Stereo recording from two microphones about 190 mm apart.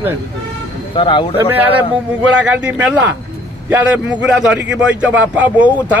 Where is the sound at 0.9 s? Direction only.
25° left (ahead or behind).